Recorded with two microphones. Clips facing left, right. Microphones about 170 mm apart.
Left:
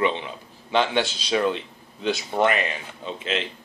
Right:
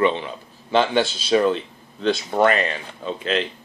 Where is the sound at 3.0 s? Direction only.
40° right (ahead or behind).